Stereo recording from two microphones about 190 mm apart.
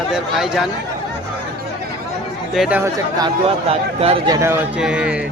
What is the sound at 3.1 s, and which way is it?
A man's voice, 25° right (ahead or behind).